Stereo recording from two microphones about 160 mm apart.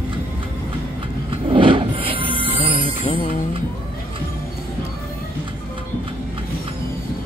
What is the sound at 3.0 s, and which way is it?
Music, 55° left (ahead or behind).